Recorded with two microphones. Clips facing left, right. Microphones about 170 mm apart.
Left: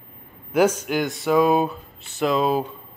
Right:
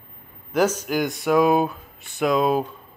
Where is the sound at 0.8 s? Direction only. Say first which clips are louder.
Even; centre (ahead or behind).